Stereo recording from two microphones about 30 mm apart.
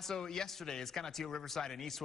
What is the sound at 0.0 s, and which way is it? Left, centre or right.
Speech, centre.